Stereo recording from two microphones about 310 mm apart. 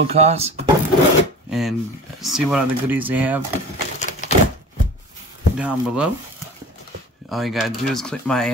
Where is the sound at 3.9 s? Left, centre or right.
Left.